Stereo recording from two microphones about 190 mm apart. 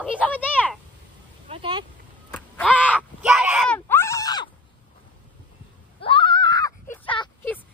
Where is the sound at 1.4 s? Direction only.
30° right (ahead or behind).